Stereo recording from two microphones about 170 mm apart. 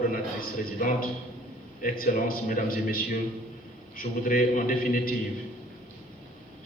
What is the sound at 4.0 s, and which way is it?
A man's voice, 55° left (ahead or behind).